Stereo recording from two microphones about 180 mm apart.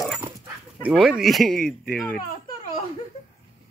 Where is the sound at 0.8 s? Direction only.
5° right (ahead or behind).